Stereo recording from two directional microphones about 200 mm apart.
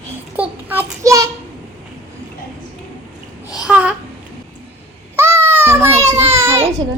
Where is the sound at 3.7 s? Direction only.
5° right (ahead or behind).